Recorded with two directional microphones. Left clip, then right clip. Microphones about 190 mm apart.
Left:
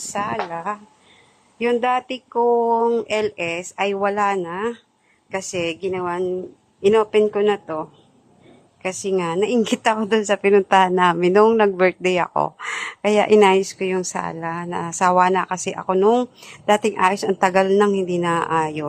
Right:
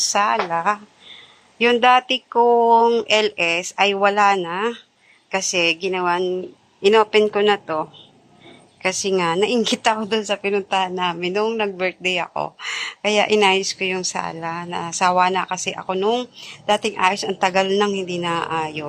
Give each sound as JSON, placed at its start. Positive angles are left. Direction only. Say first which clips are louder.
{"t": 0.1, "sound": "a woman's voice", "louder": "right 2 dB", "side_deg": 5}
{"t": 9.6, "sound": "a woman's voice", "louder": "even", "side_deg": 25}
{"t": 15.0, "sound": "a woman's voice", "louder": "left 1 dB", "side_deg": 30}